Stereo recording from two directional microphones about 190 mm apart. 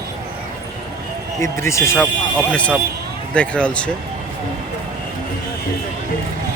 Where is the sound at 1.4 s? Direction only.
15° left (ahead or behind).